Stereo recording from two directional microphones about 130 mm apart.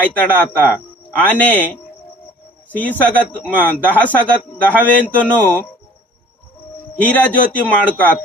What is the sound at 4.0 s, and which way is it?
Speech, 10° left (ahead or behind).